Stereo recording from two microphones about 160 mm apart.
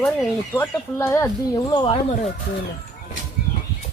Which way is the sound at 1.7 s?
30° left (ahead or behind).